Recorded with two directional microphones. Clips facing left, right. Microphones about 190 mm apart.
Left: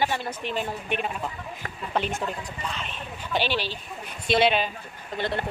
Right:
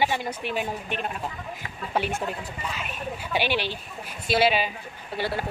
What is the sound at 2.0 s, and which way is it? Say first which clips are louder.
A woman's voice: right 1 dB; 10° right (ahead or behind).